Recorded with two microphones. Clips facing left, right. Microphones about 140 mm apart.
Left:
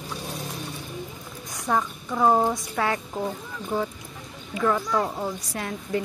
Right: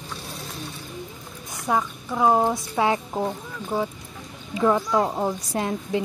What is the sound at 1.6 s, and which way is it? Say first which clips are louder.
A woman's voice: right 1 dB; 5° right (ahead or behind).